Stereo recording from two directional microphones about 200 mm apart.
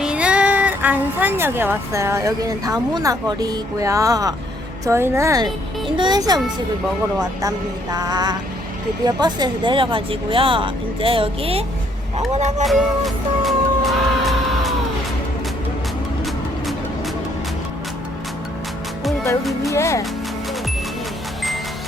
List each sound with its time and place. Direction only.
0.0 s a woman's voice: 5° right (ahead or behind)
7.4 s speech: 20° right (ahead or behind); by 12.6 s 35° right (ahead or behind)
12.6 s music: centre (ahead or behind)
19.7 s speech: 15° left (ahead or behind)